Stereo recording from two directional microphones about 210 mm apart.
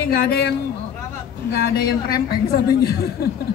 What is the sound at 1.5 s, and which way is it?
Speech, 50° left (ahead or behind).